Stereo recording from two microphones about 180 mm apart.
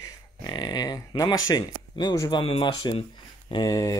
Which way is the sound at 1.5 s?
20° left (ahead or behind).